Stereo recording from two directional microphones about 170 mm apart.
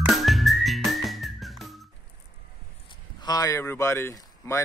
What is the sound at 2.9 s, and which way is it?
Speech, 25° left (ahead or behind).